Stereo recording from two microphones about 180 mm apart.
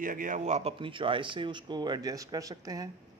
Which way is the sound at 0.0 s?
50° right (ahead or behind).